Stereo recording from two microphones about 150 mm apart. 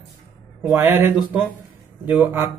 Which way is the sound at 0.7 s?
15° right (ahead or behind).